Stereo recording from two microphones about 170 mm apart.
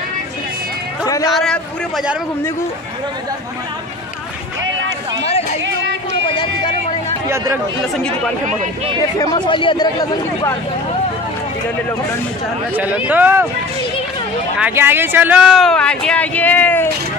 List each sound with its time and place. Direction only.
1.0 s a sound: 20° left (ahead or behind)
1.3 s speech: centre (ahead or behind)
7.2 s speech: 15° right (ahead or behind)
9.2 s speech: 25° left (ahead or behind)
12.7 s speech: 10° right (ahead or behind)
14.6 s speech: 15° right (ahead or behind); by 16.9 s 10° left (ahead or behind)